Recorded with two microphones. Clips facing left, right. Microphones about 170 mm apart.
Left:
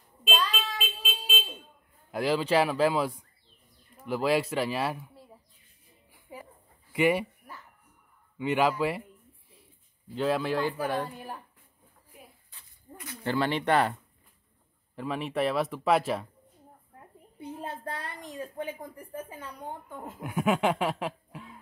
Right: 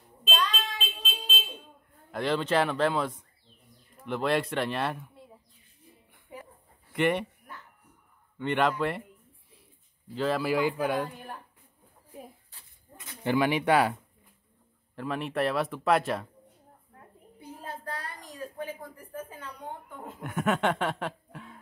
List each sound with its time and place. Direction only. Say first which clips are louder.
0.3 s a sound: left 1 dB; 5° left (ahead or behind)
2.0 s speech: left 1 dB; 5° left (ahead or behind)
6.3 s a sound: even; centre (ahead or behind)
8.4 s speech: left 1 dB; 5° left (ahead or behind)
10.1 s a man's voice: even; centre (ahead or behind)
12.9 s speech: right 2 dB; 20° right (ahead or behind)
15.0 s speech: even; centre (ahead or behind)
17.4 s a sound: left 4 dB; 25° left (ahead or behind)
18.8 s speech: left 1 dB; 10° left (ahead or behind)